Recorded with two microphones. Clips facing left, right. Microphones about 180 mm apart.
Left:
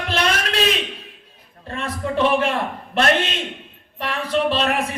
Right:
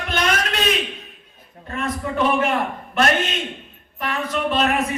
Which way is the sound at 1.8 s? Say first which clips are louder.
Left 1 dB; 30° left (ahead or behind).